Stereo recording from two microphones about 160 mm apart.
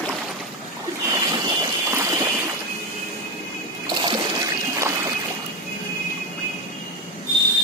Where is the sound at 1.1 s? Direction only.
20° right (ahead or behind).